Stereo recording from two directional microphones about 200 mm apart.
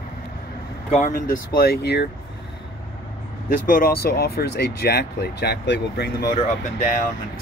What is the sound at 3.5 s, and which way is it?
Speech, 45° left (ahead or behind).